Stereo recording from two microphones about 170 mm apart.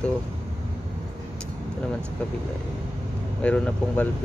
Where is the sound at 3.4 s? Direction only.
5° left (ahead or behind).